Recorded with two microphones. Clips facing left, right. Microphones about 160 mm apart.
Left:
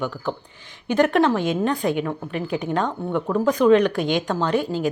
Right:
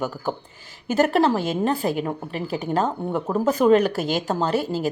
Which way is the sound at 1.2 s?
40° right (ahead or behind).